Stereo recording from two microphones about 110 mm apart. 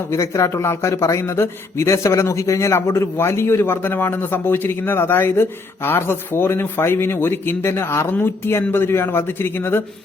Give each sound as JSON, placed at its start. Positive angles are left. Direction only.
{"t": 0.1, "sound": "speech", "side_deg": 25}